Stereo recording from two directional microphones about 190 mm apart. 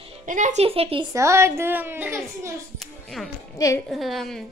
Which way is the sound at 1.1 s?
15° right (ahead or behind).